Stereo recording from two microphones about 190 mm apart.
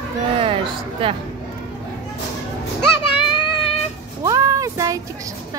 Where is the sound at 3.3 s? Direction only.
25° left (ahead or behind).